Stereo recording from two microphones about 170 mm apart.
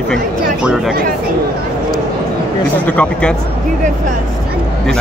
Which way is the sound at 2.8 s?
10° left (ahead or behind).